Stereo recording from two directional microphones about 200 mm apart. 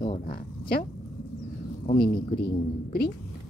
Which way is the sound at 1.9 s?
50° left (ahead or behind).